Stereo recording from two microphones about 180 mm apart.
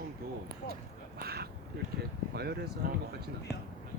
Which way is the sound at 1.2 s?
60° right (ahead or behind).